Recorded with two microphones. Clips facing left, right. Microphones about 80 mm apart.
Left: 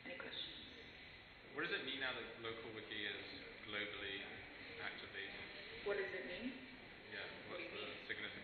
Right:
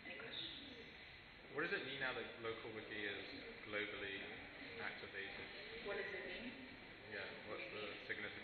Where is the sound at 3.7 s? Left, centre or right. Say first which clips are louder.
Right 1 dB; centre.